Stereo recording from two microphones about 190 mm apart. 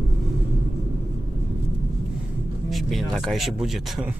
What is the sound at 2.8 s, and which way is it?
Speech, centre (ahead or behind).